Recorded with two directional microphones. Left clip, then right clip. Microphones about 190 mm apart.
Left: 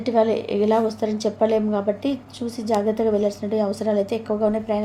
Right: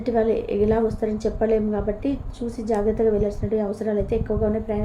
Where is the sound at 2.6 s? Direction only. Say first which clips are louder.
Even; 15° left (ahead or behind).